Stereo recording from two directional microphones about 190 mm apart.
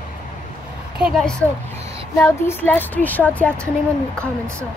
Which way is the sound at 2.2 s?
15° left (ahead or behind).